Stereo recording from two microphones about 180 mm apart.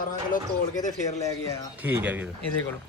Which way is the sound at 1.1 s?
15° left (ahead or behind).